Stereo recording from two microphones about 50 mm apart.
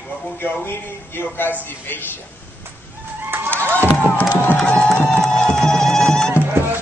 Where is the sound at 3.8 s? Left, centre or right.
Right.